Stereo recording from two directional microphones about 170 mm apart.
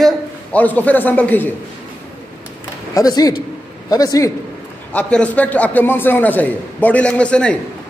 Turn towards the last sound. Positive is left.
turn(degrees=5)  # may be behind; listen again after turning